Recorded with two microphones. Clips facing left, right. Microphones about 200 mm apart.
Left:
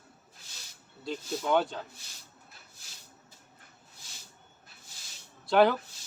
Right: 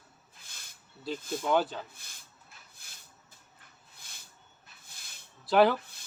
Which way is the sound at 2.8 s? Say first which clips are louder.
Left 2 dB; 55° right (ahead or behind).